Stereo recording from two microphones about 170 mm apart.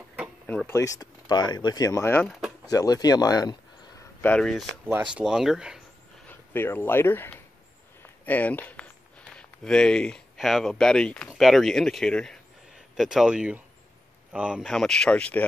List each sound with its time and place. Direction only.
0.5 s speech: 10° left (ahead or behind)
4.2 s speech: 5° left (ahead or behind)
4.8 s speech: 10° right (ahead or behind)
6.2 s speech: 10° left (ahead or behind)